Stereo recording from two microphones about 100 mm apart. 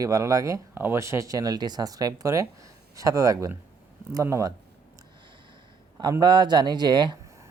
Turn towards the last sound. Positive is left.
turn(degrees=-50)  # may be behind; listen again after turning